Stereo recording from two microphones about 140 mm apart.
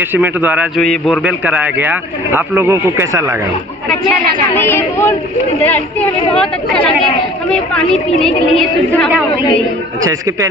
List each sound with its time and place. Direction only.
0.1 s a man's voice: 15° right (ahead or behind)
0.7 s speech: 10° left (ahead or behind)
1.1 s a man's voice: 10° right (ahead or behind)
4.6 s speech: 15° left (ahead or behind)
6.3 s a woman's voice: 5° left (ahead or behind)